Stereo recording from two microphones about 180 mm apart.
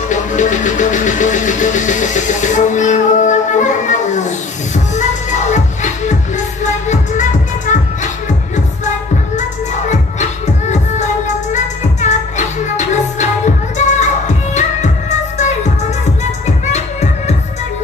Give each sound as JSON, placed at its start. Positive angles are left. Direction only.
{"t": 0.1, "sound": "music", "side_deg": 45}
{"t": 9.4, "sound": "music", "side_deg": 40}